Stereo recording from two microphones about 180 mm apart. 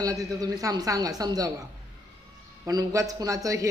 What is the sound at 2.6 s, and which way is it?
Speech, 20° right (ahead or behind).